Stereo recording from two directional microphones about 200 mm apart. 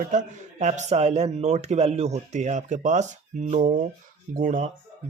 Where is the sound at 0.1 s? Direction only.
35° right (ahead or behind).